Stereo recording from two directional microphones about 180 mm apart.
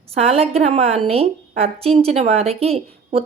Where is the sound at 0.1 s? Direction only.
35° right (ahead or behind).